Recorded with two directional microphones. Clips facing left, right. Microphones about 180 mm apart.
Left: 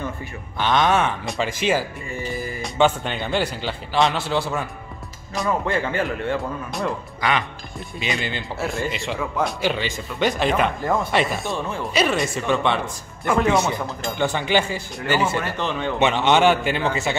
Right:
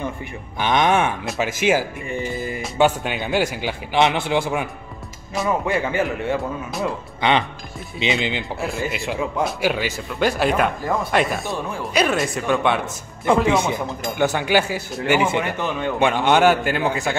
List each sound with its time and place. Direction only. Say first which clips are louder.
0.6 s speech: right 1 dB; 15° right (ahead or behind)
1.2 s speech: right 2 dB; 5° right (ahead or behind); by 2.6 s 20° right (ahead or behind)
2.6 s speech: right 1 dB; 5° right (ahead or behind)
6.0 s speech: right 1 dB; 20° right (ahead or behind)
8.5 s speech: even; 5° right (ahead or behind)